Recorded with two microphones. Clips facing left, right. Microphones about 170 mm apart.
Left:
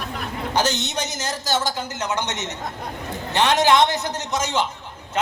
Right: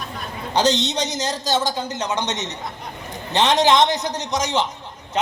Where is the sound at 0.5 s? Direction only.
15° right (ahead or behind).